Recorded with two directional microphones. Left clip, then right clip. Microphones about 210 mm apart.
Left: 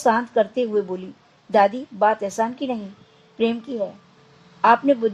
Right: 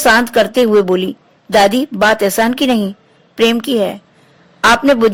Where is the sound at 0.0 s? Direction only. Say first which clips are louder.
Right 9 dB; 40° right (ahead or behind).